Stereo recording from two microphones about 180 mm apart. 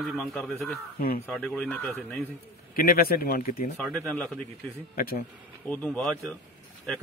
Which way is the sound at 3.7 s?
Centre (ahead or behind).